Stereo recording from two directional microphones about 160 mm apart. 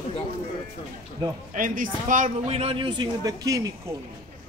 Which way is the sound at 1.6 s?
55° right (ahead or behind).